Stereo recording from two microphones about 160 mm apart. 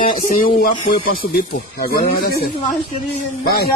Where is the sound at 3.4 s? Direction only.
75° left (ahead or behind).